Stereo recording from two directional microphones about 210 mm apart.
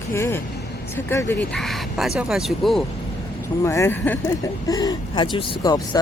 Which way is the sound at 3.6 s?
15° left (ahead or behind).